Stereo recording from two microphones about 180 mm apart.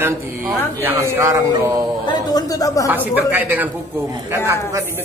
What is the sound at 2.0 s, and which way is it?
Speech, 20° left (ahead or behind).